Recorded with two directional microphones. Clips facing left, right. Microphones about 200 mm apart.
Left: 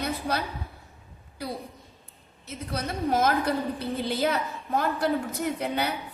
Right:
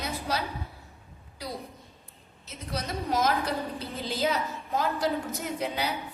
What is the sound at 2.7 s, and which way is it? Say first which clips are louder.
A woman's voice: left 3 dB; 55° left (ahead or behind).